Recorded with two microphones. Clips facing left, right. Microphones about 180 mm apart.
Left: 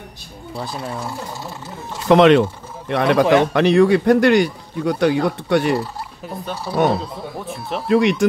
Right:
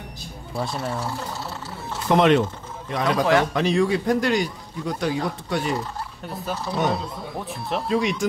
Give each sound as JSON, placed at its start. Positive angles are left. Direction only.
{"t": 0.6, "sound": "speech", "side_deg": 0}
{"t": 0.9, "sound": "water", "side_deg": 15}
{"t": 2.0, "sound": "speech", "side_deg": 90}
{"t": 2.9, "sound": "a man's voice", "side_deg": 70}
{"t": 6.5, "sound": "speech", "side_deg": 10}
{"t": 7.9, "sound": "speech", "side_deg": 65}